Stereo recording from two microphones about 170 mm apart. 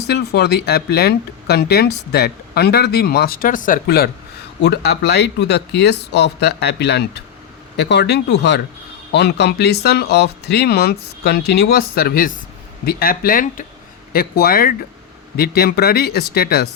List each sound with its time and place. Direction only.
0.1 s speech: 75° left (ahead or behind)